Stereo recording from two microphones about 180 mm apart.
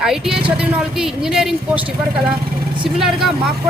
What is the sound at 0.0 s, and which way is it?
A woman's voice, centre (ahead or behind).